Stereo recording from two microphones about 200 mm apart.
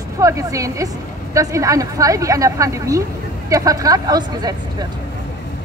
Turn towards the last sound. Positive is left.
turn(degrees=-20)  # may be behind; listen again after turning